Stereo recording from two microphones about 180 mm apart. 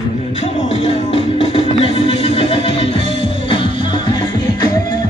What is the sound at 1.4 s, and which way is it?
Music, 35° left (ahead or behind).